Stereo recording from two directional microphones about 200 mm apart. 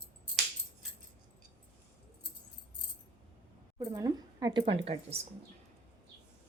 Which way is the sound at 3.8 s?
15° right (ahead or behind).